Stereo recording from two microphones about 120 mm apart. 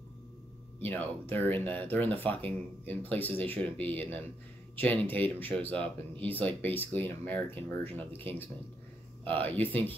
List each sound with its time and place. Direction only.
0.7 s speech: 15° left (ahead or behind)